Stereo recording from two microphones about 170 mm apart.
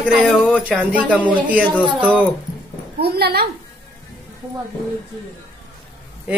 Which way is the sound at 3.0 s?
70° right (ahead or behind).